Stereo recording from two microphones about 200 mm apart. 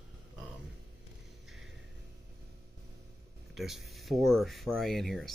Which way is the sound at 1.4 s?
Centre (ahead or behind).